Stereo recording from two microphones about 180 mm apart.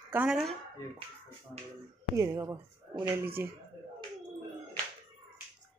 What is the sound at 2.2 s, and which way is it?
Speech, 20° right (ahead or behind).